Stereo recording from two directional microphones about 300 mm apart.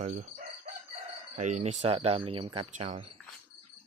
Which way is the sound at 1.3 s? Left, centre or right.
Right.